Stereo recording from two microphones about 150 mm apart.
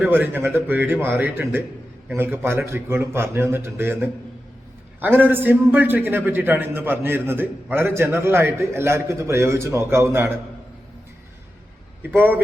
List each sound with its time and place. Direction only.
0.0 s a man's voice: 15° right (ahead or behind)
12.0 s a man's voice: 15° right (ahead or behind)